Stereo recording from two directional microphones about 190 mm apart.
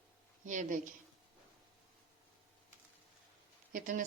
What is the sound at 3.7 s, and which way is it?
Speech, 45° right (ahead or behind).